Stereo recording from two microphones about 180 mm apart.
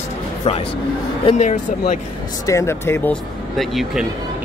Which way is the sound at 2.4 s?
15° left (ahead or behind).